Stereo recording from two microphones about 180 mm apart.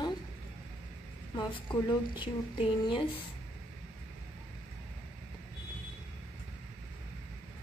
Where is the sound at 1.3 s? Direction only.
25° left (ahead or behind).